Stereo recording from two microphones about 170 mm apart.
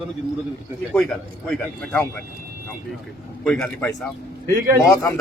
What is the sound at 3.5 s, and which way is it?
Speech, 5° left (ahead or behind).